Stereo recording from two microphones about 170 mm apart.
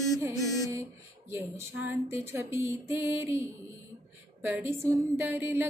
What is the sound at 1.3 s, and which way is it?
Music, 15° right (ahead or behind).